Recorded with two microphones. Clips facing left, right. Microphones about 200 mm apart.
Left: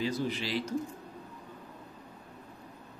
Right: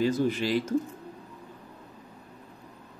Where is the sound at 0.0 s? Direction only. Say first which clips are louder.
Right 7 dB; 50° right (ahead or behind).